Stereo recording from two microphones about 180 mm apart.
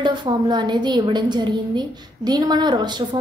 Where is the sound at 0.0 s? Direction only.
25° right (ahead or behind).